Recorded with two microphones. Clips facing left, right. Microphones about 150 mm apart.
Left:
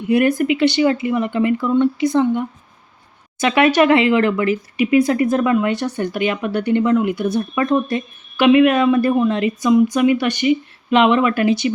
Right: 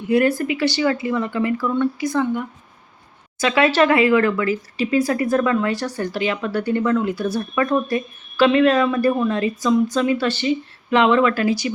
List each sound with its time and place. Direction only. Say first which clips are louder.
0.1 s a woman's voice: left 2 dB; 20° left (ahead or behind)